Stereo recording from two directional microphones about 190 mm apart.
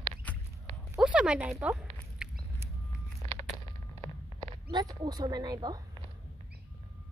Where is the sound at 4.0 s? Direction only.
25° right (ahead or behind).